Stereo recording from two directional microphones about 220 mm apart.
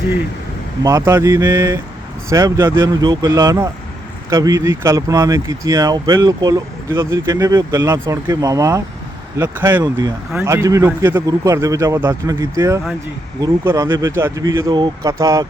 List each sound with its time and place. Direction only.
0.8 s speech: 15° right (ahead or behind)